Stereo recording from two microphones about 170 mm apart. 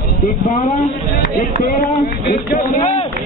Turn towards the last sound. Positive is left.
turn(degrees=40)  # may be behind; listen again after turning